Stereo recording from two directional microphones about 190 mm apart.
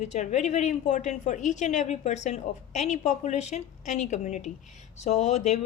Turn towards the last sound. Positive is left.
turn(degrees=35)  # may be behind; listen again after turning